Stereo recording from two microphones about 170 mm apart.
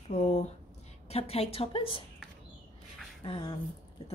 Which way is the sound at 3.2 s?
30° left (ahead or behind).